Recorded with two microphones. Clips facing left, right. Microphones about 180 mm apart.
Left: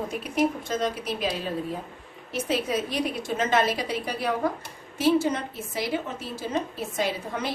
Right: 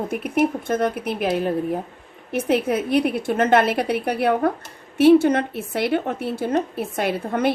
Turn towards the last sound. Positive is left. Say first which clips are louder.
# right 7 dB
turn(degrees=-60)  # may be behind; listen again after turning